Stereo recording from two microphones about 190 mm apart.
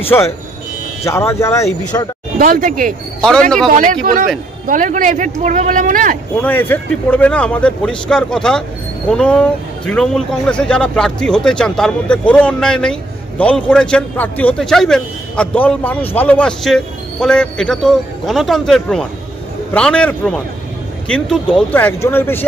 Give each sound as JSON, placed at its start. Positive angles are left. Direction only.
{"t": 0.0, "sound": "speech", "side_deg": 10}
{"t": 2.3, "sound": "speech", "side_deg": -45}
{"t": 3.2, "sound": "a man's voice", "side_deg": 5}
{"t": 3.7, "sound": "speech", "side_deg": -45}
{"t": 6.4, "sound": "a man's voice", "side_deg": 10}